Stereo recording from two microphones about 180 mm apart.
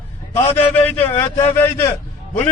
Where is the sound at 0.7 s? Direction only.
10° left (ahead or behind).